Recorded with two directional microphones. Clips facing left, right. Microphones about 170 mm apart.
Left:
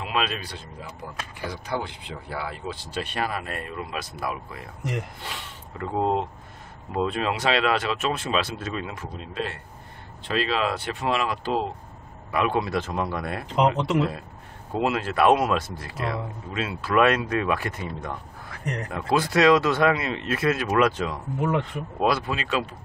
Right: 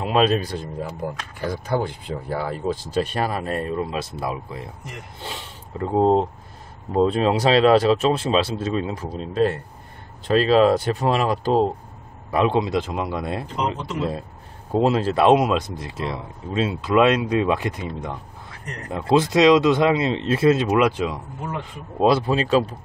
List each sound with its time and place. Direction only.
0.0 s a man's voice: 40° right (ahead or behind)
12.5 s speech: 20° right (ahead or behind)
14.7 s speech: 30° right (ahead or behind); by 21.2 s 15° right (ahead or behind)
22.0 s speech: 30° right (ahead or behind)